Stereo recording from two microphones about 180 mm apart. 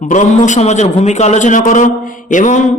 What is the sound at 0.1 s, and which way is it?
A man's voice, 45° left (ahead or behind).